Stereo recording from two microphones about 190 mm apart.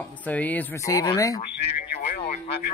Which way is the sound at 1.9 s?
40° left (ahead or behind).